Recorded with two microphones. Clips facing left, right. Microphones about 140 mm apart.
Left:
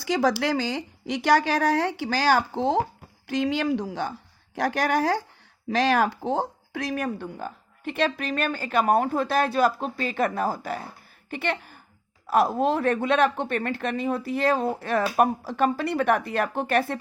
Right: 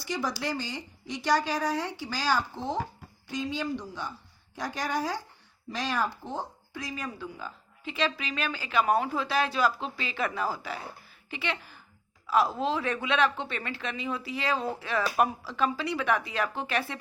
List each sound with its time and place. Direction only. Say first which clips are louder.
0.0 s a woman's voice: left 9 dB; 90° left
3.2 s a woman's voice: left 8 dB; 75° left (ahead or behind)
4.5 s speech: left 8 dB; 75° left (ahead or behind); by 17.0 s 50° left (ahead or behind)